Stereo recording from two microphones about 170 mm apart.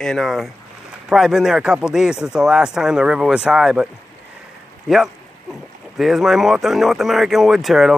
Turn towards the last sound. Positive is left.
turn(degrees=0)  # may be behind; listen again after turning